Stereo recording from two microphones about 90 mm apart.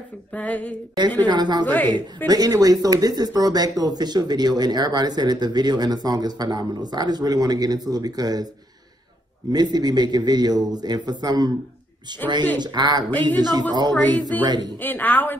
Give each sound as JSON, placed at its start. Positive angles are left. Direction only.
{"t": 0.3, "sound": "a sound", "side_deg": 15}
{"t": 1.2, "sound": "a woman's voice", "side_deg": -55}
{"t": 1.7, "sound": "a woman's voice", "side_deg": 20}
{"t": 2.2, "sound": "speech", "side_deg": -45}
{"t": 9.5, "sound": "a woman's voice", "side_deg": -50}
{"t": 14.8, "sound": "a woman's voice", "side_deg": 20}